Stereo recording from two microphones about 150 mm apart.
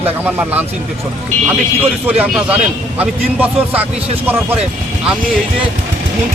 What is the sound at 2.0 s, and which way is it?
A man's voice, 10° right (ahead or behind).